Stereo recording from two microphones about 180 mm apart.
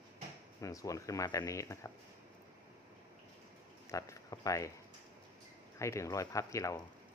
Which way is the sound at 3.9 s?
20° left (ahead or behind).